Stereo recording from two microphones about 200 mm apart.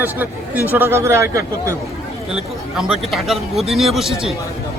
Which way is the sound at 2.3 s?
5° right (ahead or behind).